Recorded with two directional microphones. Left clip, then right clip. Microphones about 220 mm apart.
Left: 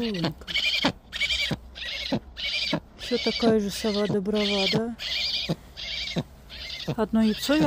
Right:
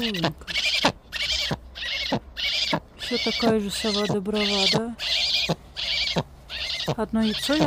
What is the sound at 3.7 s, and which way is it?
Speech, 20° right (ahead or behind).